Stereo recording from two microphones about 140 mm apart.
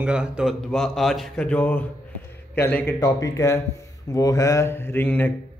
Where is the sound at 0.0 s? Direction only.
5° right (ahead or behind).